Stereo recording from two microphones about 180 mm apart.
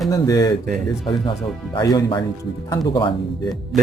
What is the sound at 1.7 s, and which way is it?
Speech, 25° left (ahead or behind).